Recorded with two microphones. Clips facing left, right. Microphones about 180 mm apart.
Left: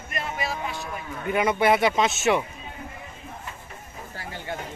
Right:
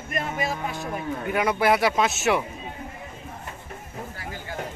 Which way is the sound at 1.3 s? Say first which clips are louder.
Left 1 dB; centre (ahead or behind).